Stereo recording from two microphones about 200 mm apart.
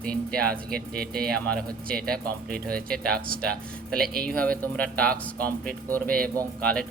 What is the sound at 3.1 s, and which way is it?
Speech, 50° right (ahead or behind).